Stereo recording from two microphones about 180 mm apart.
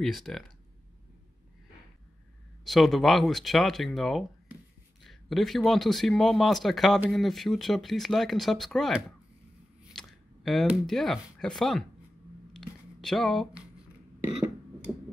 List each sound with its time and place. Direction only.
0.0 s speech: centre (ahead or behind)
2.6 s speech: centre (ahead or behind)
12.5 s a sound: centre (ahead or behind)